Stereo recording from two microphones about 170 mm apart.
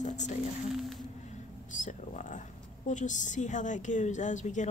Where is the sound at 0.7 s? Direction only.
Centre (ahead or behind).